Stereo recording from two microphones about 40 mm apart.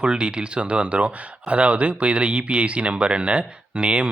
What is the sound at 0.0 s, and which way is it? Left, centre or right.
Speech, right.